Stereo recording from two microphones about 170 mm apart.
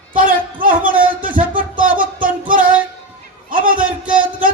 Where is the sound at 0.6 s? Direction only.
55° right (ahead or behind).